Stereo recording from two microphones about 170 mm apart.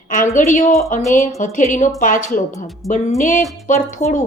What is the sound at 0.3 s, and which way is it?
Speech, 45° left (ahead or behind).